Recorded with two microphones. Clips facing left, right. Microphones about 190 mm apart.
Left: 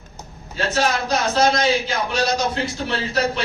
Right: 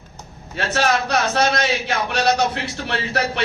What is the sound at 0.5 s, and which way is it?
A man's voice, 65° right (ahead or behind).